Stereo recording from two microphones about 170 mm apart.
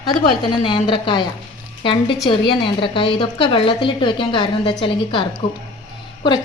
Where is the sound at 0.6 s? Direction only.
30° left (ahead or behind).